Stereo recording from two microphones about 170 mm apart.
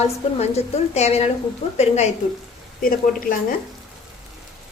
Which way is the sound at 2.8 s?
55° left (ahead or behind).